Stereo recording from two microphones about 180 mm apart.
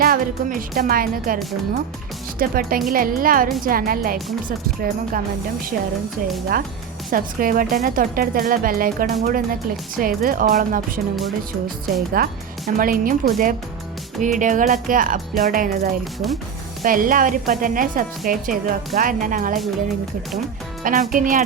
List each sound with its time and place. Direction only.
0.0 s speech: 50° right (ahead or behind)
2.4 s speech: 55° right (ahead or behind)
7.1 s speech: 50° right (ahead or behind)
12.1 s speech: 50° right (ahead or behind)
20.8 s speech: 50° right (ahead or behind)